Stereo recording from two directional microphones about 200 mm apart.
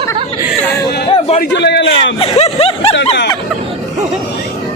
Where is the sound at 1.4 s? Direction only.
60° left (ahead or behind).